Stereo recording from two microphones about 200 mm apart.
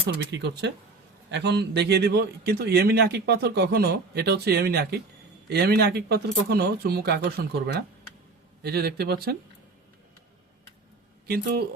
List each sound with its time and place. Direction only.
0.1 s a man's voice: 60° right (ahead or behind)